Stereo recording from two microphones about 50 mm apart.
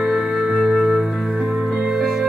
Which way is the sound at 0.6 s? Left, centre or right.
Centre.